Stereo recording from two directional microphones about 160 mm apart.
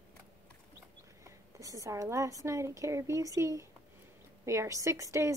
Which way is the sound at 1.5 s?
20° right (ahead or behind).